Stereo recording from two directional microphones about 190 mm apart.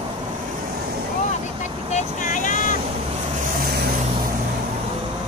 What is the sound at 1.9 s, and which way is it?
Vehicle, 40° left (ahead or behind).